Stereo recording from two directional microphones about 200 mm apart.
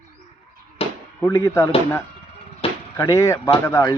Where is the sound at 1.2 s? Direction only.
15° left (ahead or behind).